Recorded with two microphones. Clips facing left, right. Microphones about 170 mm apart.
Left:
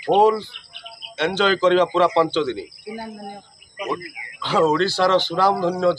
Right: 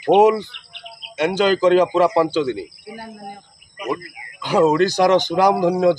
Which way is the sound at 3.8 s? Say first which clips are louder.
Right 2 dB; 10° right (ahead or behind).